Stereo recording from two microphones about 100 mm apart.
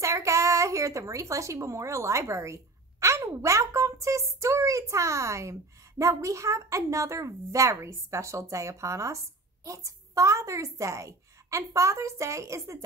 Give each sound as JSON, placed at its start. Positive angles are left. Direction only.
{"t": 0.0, "sound": "speech", "side_deg": -30}